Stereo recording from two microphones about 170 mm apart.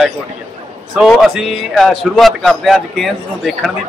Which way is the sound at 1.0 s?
Centre (ahead or behind).